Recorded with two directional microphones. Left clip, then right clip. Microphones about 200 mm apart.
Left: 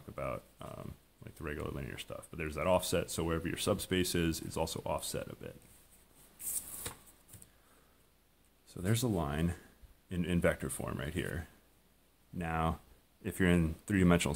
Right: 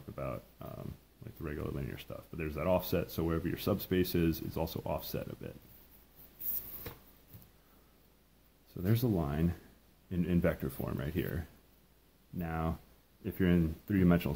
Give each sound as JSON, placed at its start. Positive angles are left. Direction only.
{"t": 0.1, "sound": "speech", "side_deg": 20}
{"t": 8.7, "sound": "speech", "side_deg": 15}
{"t": 12.4, "sound": "speech", "side_deg": 30}